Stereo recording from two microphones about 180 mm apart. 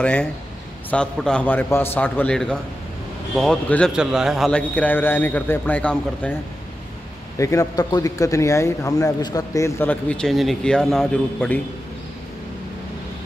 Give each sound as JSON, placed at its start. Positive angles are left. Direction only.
{"t": 0.0, "sound": "a man's voice", "side_deg": 5}
{"t": 7.3, "sound": "a man's voice", "side_deg": 15}